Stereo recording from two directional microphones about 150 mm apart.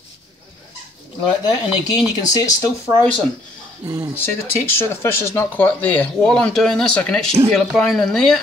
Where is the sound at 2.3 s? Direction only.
25° left (ahead or behind).